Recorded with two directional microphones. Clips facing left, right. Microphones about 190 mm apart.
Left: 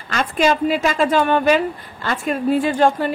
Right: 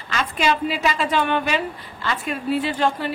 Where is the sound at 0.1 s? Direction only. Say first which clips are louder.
Left 4 dB; 45° left (ahead or behind).